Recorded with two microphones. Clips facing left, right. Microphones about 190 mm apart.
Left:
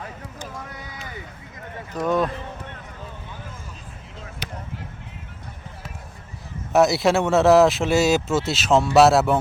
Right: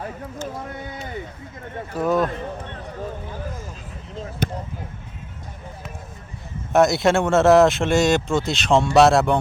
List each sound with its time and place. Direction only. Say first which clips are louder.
0.9 s a sound: right 5 dB; 25° right (ahead or behind)
1.9 s speech: right 1 dB; 5° right (ahead or behind)
4.4 s basketball bounce: right 11 dB; 50° right (ahead or behind)
6.7 s speech: right 1 dB; centre (ahead or behind)